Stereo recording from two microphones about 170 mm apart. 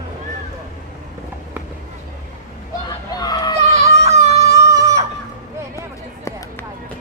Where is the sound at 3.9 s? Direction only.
40° right (ahead or behind).